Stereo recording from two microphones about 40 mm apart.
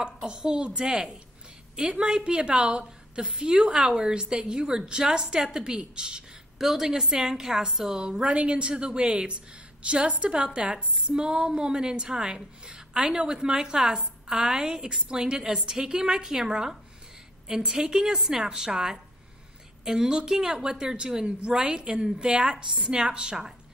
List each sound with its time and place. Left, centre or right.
0.0 s a woman's voice: right
6.6 s a woman's voice: centre
8.2 s a woman's voice: right